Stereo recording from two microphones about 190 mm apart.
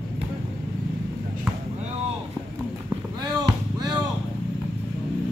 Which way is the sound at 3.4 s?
25° right (ahead or behind).